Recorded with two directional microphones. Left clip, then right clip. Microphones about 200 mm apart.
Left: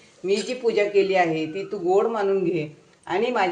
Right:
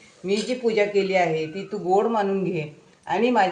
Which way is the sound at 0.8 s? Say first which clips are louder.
Left 2 dB; 40° left (ahead or behind).